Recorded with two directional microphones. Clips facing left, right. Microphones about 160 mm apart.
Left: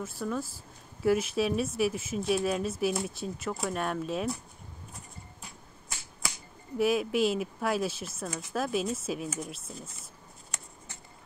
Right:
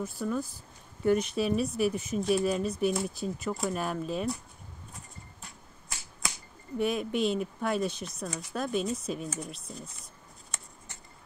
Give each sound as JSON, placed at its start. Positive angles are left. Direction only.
{"t": 0.0, "sound": "speech", "side_deg": 0}
{"t": 6.8, "sound": "speech", "side_deg": 5}